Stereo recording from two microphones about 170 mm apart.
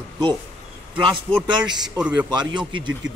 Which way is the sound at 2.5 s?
25° right (ahead or behind).